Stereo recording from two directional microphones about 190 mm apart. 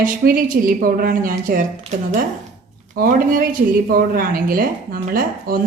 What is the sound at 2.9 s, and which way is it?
A woman's voice, 45° right (ahead or behind).